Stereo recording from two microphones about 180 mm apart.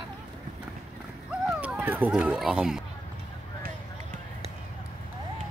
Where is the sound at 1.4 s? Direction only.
5° right (ahead or behind).